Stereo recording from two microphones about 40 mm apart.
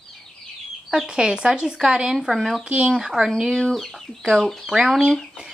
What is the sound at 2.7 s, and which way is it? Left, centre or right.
Speech, right.